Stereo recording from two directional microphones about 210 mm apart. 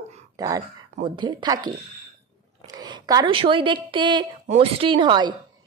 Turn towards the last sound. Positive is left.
turn(degrees=-20)  # may be behind; listen again after turning